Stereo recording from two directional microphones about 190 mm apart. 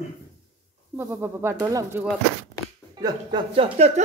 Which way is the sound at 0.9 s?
10° right (ahead or behind).